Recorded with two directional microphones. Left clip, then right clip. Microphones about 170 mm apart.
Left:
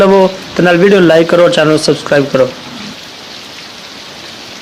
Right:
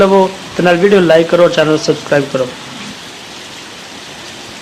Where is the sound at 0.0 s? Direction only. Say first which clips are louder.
Left 2 dB; 30° left (ahead or behind).